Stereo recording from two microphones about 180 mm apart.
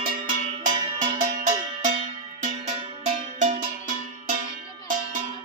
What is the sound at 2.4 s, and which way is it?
Music, 40° right (ahead or behind).